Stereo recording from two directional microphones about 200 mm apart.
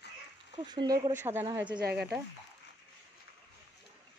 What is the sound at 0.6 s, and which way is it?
Speech, 20° right (ahead or behind).